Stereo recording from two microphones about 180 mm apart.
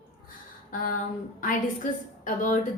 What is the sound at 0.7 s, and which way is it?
Speech, 45° left (ahead or behind).